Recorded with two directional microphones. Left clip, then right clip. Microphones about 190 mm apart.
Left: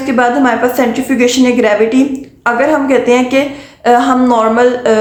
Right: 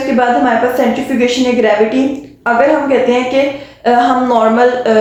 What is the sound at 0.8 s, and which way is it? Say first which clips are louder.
A woman's voice: left 1 dB; 35° left (ahead or behind).